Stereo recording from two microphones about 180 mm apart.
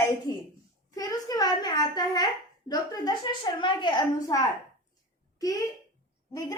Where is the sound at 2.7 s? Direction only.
20° left (ahead or behind).